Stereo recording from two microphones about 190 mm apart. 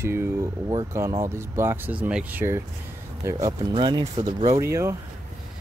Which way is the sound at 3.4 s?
20° right (ahead or behind).